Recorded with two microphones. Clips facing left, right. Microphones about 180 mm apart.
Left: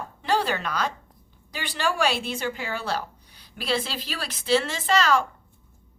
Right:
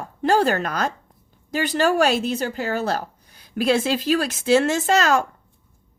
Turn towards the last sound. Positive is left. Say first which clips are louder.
# right 3 dB
turn(degrees=-45)  # may be behind; listen again after turning